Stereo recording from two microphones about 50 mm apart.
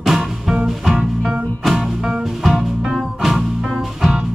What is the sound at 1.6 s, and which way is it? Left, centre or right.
Music, centre.